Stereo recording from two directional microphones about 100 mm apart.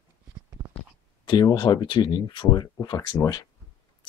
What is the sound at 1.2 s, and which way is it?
Speech, 55° left (ahead or behind).